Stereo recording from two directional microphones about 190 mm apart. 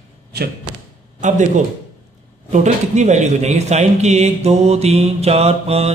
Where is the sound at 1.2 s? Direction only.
40° right (ahead or behind).